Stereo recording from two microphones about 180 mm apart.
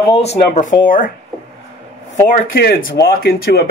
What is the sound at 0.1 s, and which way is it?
Speech, 35° left (ahead or behind).